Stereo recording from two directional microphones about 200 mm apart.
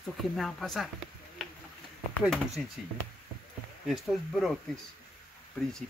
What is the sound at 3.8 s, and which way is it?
Speech, centre (ahead or behind).